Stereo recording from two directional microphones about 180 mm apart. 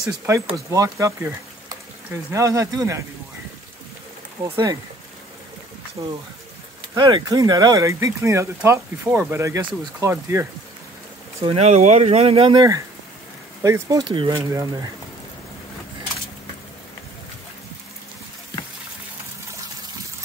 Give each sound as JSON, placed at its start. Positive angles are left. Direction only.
{"t": 0.7, "sound": "speech", "side_deg": -15}
{"t": 6.0, "sound": "speech", "side_deg": -20}
{"t": 11.4, "sound": "speech", "side_deg": -35}